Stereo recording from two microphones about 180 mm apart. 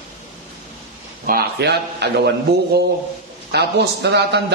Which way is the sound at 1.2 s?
55° right (ahead or behind).